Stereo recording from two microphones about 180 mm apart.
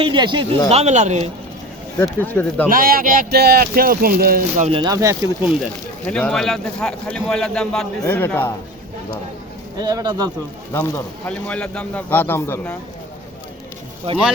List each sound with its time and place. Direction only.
0.0 s speech: 25° right (ahead or behind)
0.7 s speech: 35° right (ahead or behind)
2.2 s a man's voice: 10° left (ahead or behind)
2.6 s speech: 55° right (ahead or behind)
4.6 s speech: 30° right (ahead or behind)
6.1 s a man's voice: 5° left (ahead or behind)
9.7 s speech: 20° right (ahead or behind)
10.7 s a man's voice: 15° left (ahead or behind)